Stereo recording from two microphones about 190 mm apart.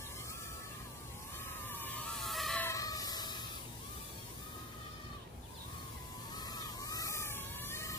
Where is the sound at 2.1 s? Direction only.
Centre (ahead or behind).